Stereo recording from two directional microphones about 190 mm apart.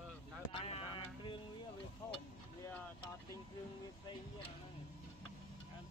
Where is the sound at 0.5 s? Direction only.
30° left (ahead or behind).